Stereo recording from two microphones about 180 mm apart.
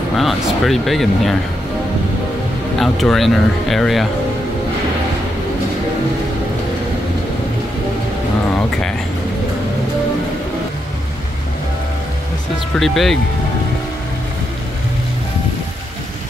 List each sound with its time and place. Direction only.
0.1 s speech: centre (ahead or behind)
2.8 s speech: centre (ahead or behind)
12.7 s speech: centre (ahead or behind)